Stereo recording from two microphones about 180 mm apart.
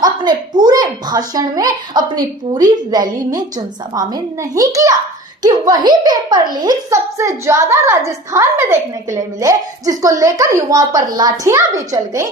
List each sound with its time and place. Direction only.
0.0 s a child's voice: 25° right (ahead or behind)